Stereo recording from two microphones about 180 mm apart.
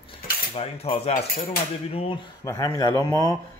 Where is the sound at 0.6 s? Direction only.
35° left (ahead or behind).